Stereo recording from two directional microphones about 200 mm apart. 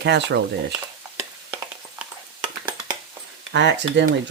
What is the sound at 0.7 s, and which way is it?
Stir, 10° right (ahead or behind).